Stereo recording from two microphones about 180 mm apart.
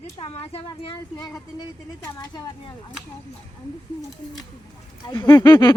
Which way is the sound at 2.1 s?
20° left (ahead or behind).